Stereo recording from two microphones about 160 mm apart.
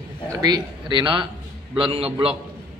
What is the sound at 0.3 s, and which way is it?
A man's voice, 25° right (ahead or behind).